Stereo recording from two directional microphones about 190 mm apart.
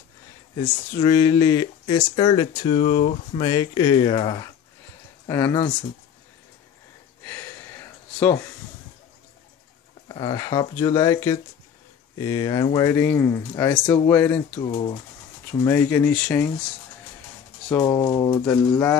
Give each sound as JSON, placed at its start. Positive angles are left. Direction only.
{"t": 0.6, "sound": "speech", "side_deg": 20}
{"t": 7.2, "sound": "a sound", "side_deg": 10}
{"t": 10.0, "sound": "speech", "side_deg": 20}
{"t": 14.6, "sound": "speech", "side_deg": 25}
{"t": 15.6, "sound": "speech", "side_deg": 10}
{"t": 17.6, "sound": "speech", "side_deg": 10}